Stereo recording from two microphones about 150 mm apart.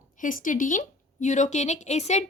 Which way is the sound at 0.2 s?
65° left (ahead or behind).